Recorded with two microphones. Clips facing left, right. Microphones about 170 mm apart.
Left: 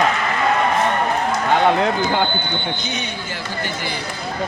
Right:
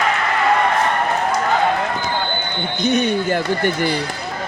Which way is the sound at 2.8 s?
50° right (ahead or behind).